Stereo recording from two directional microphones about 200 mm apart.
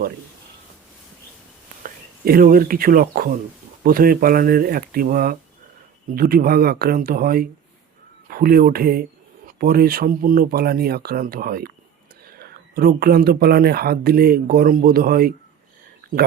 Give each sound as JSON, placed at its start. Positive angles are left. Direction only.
{"t": 1.8, "sound": "speech", "side_deg": -45}